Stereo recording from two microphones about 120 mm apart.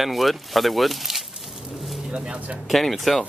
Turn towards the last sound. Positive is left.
turn(degrees=0)  # may be behind; listen again after turning